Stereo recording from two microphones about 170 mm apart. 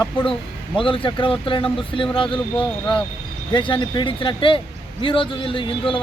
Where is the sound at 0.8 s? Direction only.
30° left (ahead or behind).